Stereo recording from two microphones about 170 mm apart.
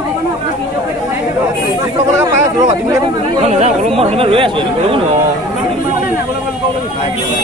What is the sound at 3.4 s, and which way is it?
Speech, 40° right (ahead or behind).